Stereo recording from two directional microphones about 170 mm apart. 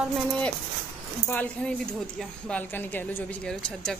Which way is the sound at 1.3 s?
10° left (ahead or behind).